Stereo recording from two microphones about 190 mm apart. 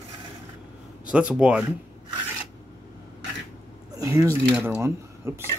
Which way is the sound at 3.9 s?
15° right (ahead or behind).